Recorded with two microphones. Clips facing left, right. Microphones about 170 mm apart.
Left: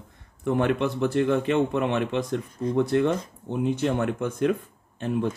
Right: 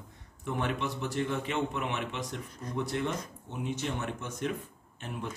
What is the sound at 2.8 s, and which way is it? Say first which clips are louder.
Speech: left 9 dB; 75° left (ahead or behind).